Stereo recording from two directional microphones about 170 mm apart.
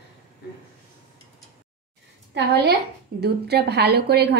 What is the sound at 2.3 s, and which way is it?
A woman's voice, 75° right (ahead or behind).